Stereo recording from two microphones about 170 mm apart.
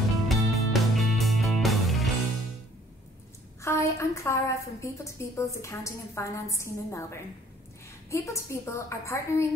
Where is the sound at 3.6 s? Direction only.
15° left (ahead or behind).